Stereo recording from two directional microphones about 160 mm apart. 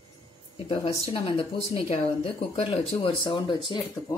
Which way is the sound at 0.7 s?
35° left (ahead or behind).